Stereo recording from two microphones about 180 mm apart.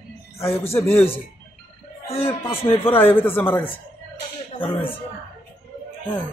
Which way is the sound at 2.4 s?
30° left (ahead or behind).